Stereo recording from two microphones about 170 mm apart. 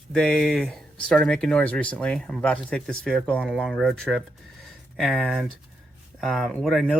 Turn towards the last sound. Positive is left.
turn(degrees=0)  # may be behind; listen again after turning